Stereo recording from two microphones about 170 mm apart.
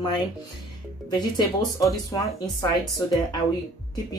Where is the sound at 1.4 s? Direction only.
20° left (ahead or behind).